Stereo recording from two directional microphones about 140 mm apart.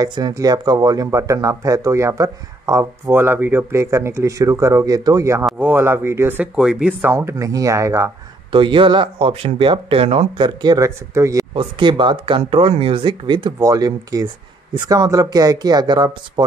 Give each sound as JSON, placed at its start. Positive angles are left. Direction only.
{"t": 0.0, "sound": "speech", "side_deg": -30}
{"t": 8.5, "sound": "speech", "side_deg": -35}
{"t": 11.5, "sound": "speech", "side_deg": -35}